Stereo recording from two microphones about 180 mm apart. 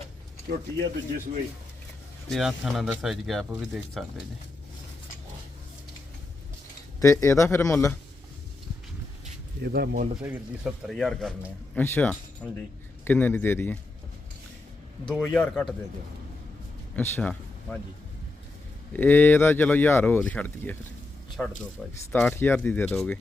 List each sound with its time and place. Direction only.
2.3 s speech: centre (ahead or behind)
7.0 s speech: 15° left (ahead or behind)
9.6 s speech: 60° right (ahead or behind)
10.2 s speech: 5° right (ahead or behind); by 13.7 s 10° left (ahead or behind)
15.1 s speech: 5° left (ahead or behind)
16.9 s speech: 10° left (ahead or behind)
18.9 s speech: 10° left (ahead or behind)
22.1 s speech: 10° left (ahead or behind)